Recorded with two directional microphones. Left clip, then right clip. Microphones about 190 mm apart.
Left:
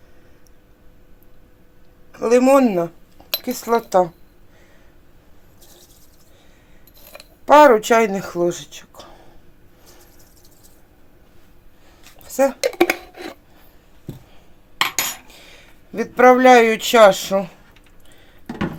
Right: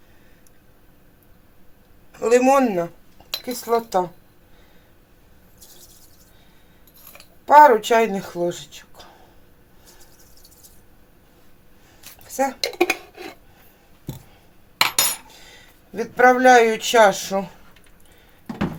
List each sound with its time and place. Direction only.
2.1 s speech: 30° left (ahead or behind)
3.3 s speech: 55° left (ahead or behind)
7.4 s speech: 55° left (ahead or behind)
12.2 s dishes: 45° left (ahead or behind)
15.4 s speech: 45° left (ahead or behind)